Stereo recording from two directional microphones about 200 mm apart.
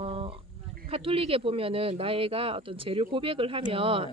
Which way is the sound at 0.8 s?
30° right (ahead or behind).